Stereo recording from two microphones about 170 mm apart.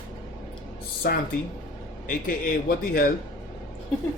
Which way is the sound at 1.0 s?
65° left (ahead or behind).